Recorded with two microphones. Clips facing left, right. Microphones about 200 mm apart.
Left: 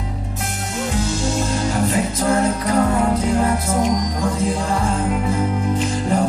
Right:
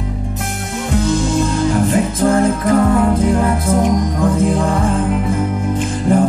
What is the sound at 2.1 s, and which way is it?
Music, 50° right (ahead or behind).